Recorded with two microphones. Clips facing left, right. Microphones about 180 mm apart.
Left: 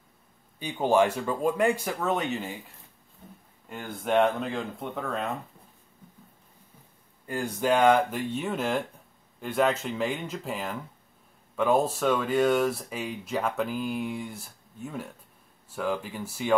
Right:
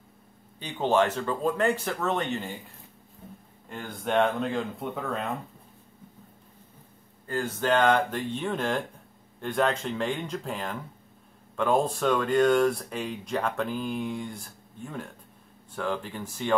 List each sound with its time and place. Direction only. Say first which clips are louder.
0.6 s speech: left 1 dB; 10° left (ahead or behind)
3.6 s speech: left 1 dB; centre (ahead or behind)
7.2 s speech: left 1 dB; 10° left (ahead or behind)